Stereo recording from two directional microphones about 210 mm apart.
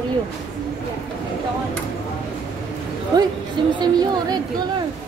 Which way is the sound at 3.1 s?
20° right (ahead or behind).